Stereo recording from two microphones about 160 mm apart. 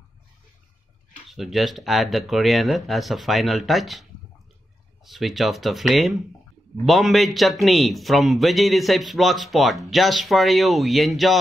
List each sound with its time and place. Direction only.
1.3 s speech: centre (ahead or behind)